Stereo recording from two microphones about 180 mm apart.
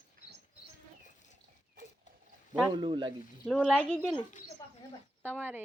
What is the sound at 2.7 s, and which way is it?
Speech, 25° right (ahead or behind).